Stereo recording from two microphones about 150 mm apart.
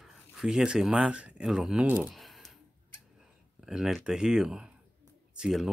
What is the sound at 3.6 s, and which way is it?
Speech, centre (ahead or behind).